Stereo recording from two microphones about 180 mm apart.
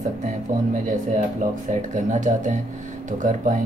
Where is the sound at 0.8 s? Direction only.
45° right (ahead or behind).